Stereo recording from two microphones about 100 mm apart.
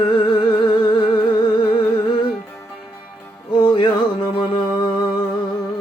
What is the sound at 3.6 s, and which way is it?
Music, 55° left (ahead or behind).